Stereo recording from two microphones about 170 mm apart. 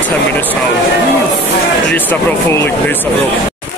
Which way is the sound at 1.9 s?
10° left (ahead or behind).